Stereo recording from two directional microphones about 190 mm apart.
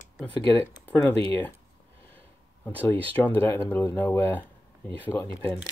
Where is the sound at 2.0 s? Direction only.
10° left (ahead or behind).